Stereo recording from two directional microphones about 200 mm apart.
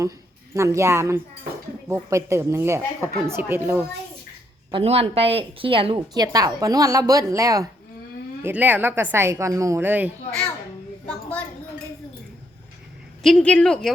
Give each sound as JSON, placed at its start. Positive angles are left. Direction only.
{"t": 0.5, "sound": "a woman's voice", "side_deg": -15}
{"t": 4.7, "sound": "a woman's voice", "side_deg": -30}
{"t": 11.0, "sound": "a sound", "side_deg": 5}
{"t": 13.2, "sound": "a woman's voice", "side_deg": 5}